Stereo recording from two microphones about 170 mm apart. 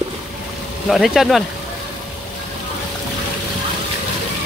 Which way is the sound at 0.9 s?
Centre (ahead or behind).